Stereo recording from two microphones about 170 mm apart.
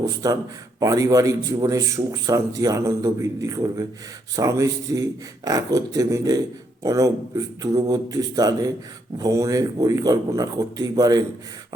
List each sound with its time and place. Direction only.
0.0 s a man's voice: 20° right (ahead or behind)